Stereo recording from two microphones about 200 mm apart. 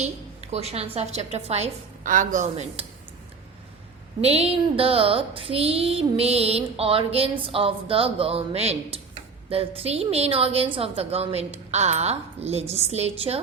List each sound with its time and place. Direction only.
0.0 s a woman's voice: 30° right (ahead or behind)
4.2 s a sound: 30° right (ahead or behind)
10.8 s a woman's voice: 30° right (ahead or behind)